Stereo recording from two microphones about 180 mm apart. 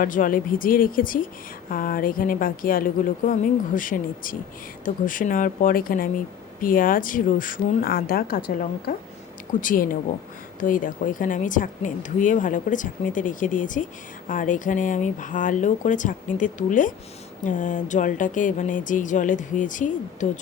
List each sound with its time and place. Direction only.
0.0 s speech: 50° left (ahead or behind)